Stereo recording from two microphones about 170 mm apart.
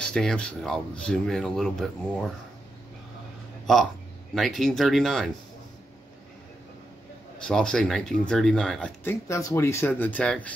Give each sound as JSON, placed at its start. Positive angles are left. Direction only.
{"t": 0.0, "sound": "speech", "side_deg": 5}
{"t": 3.7, "sound": "speech", "side_deg": 0}
{"t": 7.4, "sound": "speech", "side_deg": 5}